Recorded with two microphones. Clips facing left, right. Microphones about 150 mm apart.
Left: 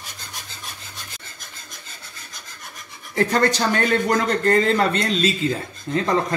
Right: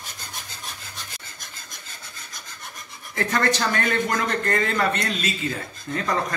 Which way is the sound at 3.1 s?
30° left (ahead or behind).